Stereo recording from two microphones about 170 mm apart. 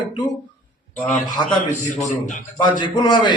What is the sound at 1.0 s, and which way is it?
Speech, centre (ahead or behind).